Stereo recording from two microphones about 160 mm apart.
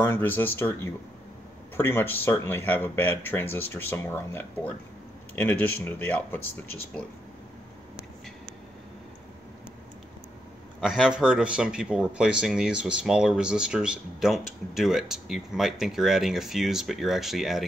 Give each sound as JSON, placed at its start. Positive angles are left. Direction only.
{"t": 0.0, "sound": "speech", "side_deg": 15}
{"t": 10.8, "sound": "speech", "side_deg": -5}